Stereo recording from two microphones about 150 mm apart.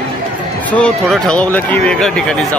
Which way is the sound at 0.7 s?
5° left (ahead or behind).